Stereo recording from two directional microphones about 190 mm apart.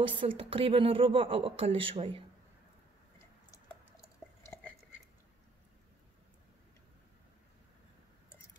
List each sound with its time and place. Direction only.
0.0 s a woman's voice: 25° right (ahead or behind)